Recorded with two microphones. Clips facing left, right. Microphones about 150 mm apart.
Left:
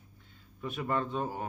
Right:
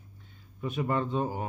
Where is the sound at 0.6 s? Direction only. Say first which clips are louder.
Right 3 dB; 20° right (ahead or behind).